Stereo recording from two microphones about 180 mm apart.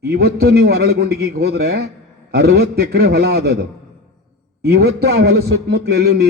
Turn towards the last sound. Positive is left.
turn(degrees=-60)  # may be behind; listen again after turning